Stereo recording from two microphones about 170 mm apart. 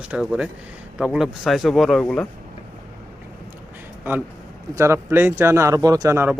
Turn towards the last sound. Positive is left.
turn(degrees=-15)  # may be behind; listen again after turning